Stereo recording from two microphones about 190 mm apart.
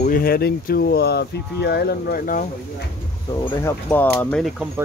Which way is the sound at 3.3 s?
15° left (ahead or behind).